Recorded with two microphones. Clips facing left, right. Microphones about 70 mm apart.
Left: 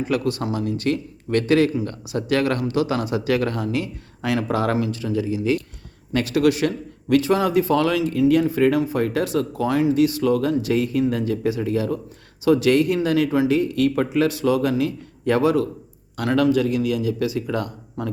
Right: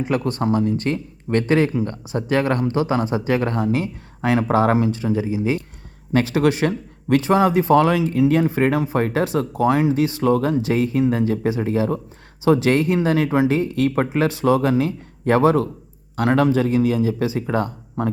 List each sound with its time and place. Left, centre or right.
0.1 s speech: right